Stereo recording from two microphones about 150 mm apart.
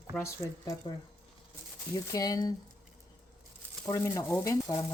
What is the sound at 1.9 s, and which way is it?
Speech, 25° left (ahead or behind).